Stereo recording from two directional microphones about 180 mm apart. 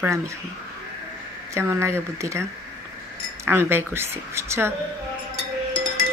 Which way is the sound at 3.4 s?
15° right (ahead or behind).